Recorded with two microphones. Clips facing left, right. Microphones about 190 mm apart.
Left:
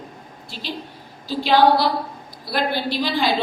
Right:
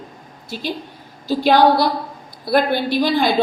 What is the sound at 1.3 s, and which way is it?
A woman's voice, 45° right (ahead or behind).